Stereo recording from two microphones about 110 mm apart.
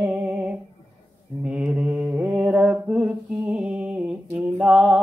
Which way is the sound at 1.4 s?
10° right (ahead or behind).